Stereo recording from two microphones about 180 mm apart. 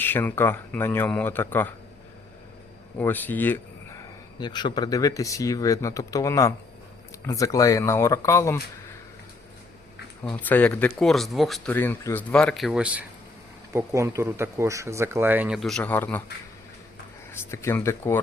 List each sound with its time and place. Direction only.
0.0 s speech: 10° left (ahead or behind)
3.0 s speech: 10° left (ahead or behind)
4.4 s speech: 25° left (ahead or behind)
10.2 s speech: 10° left (ahead or behind)
11.7 s speech: 10° left (ahead or behind)
17.3 s speech: 15° left (ahead or behind)